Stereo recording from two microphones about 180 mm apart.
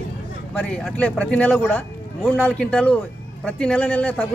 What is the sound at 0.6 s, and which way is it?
A man's voice, 5° left (ahead or behind).